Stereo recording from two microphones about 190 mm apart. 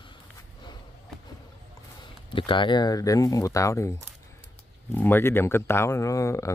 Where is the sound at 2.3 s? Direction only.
25° left (ahead or behind).